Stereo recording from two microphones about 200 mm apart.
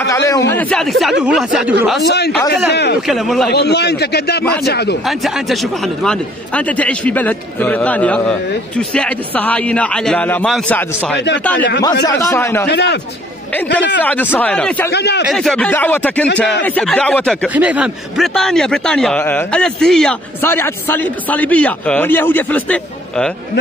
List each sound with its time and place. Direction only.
0.1 s a man's voice: 15° left (ahead or behind); by 2.0 s 5° right (ahead or behind)
2.0 s a man's voice: 55° left (ahead or behind)
3.1 s a man's voice: centre (ahead or behind)
3.4 s a man's voice: 55° left (ahead or behind)
5.0 s a man's voice: centre (ahead or behind)
11.1 s a man's voice: 60° left (ahead or behind)
12.1 s a man's voice: 15° left (ahead or behind)
12.6 s a man's voice: 60° left (ahead or behind)
14.0 s a man's voice: 10° left (ahead or behind)
14.9 s a man's voice: 55° left (ahead or behind)
15.3 s a man's voice: 5° left (ahead or behind)
17.6 s a man's voice: 5° right (ahead or behind)